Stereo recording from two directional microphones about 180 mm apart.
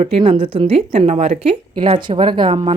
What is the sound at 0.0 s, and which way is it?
A woman's voice, 30° right (ahead or behind).